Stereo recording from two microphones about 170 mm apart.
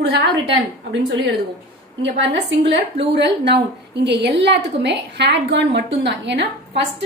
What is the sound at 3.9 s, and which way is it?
A woman's voice, 85° right.